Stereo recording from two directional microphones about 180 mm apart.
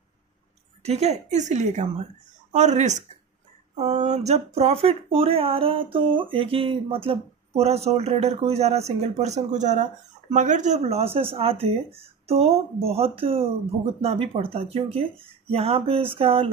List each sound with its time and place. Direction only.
0.8 s speech: 35° right (ahead or behind)